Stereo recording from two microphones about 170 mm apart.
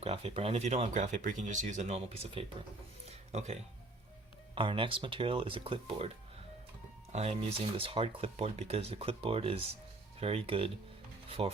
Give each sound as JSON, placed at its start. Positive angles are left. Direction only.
{"t": 0.0, "sound": "speech", "side_deg": -35}
{"t": 3.1, "sound": "music", "side_deg": -40}
{"t": 4.5, "sound": "speech", "side_deg": -30}
{"t": 7.1, "sound": "speech", "side_deg": -40}